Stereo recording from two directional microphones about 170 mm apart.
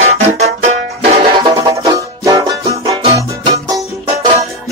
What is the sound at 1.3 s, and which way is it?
Music, 25° right (ahead or behind).